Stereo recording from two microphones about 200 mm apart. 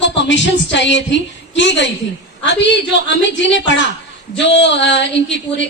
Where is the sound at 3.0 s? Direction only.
65° left (ahead or behind).